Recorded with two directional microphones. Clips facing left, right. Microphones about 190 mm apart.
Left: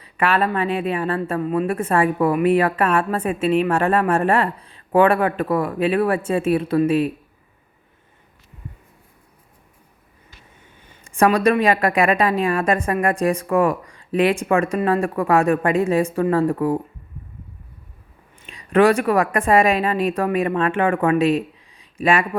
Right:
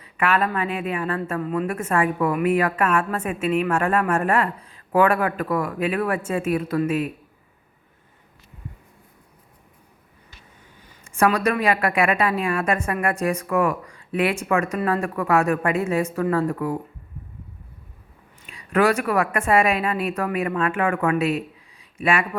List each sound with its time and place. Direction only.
0.0 s a woman's voice: 35° left (ahead or behind)
10.8 s a woman's voice: 30° left (ahead or behind)
18.4 s a woman's voice: 30° left (ahead or behind)